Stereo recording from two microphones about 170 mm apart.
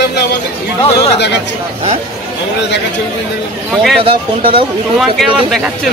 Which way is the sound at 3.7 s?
Centre (ahead or behind).